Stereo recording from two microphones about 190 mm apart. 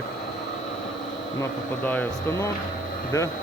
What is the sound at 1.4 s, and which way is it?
Speech, 10° left (ahead or behind).